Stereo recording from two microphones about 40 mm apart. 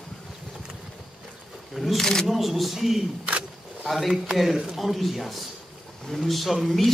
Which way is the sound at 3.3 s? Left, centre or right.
Right.